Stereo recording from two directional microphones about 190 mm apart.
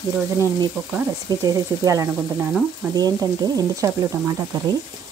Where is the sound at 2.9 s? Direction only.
20° right (ahead or behind).